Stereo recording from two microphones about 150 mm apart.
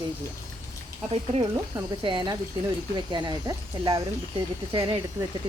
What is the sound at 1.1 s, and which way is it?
Speech, 35° right (ahead or behind).